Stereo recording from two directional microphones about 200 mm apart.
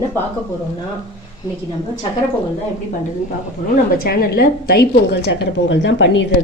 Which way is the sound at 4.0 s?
50° left (ahead or behind).